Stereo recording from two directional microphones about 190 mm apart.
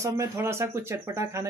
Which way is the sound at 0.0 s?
15° right (ahead or behind).